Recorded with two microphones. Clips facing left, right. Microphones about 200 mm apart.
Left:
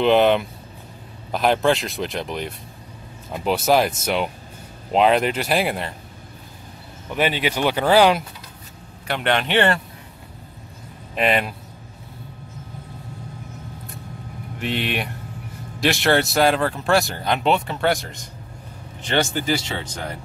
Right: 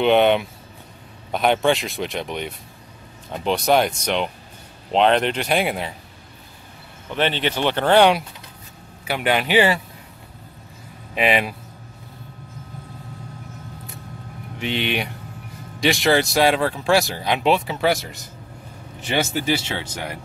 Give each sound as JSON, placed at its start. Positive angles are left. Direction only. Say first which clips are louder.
{"t": 0.0, "sound": "speech", "louder": "even", "side_deg": 0}
{"t": 7.1, "sound": "speech", "louder": "even", "side_deg": 10}
{"t": 11.1, "sound": "speech", "louder": "even", "side_deg": 0}
{"t": 14.6, "sound": "speech", "louder": "right 1 dB", "side_deg": 0}